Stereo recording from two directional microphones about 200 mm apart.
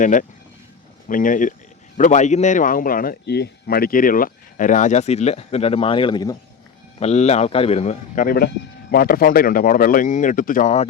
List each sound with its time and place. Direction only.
0.0 s a man's voice: 40° left (ahead or behind); by 6.3 s 25° left (ahead or behind)
7.0 s a man's voice: 35° left (ahead or behind)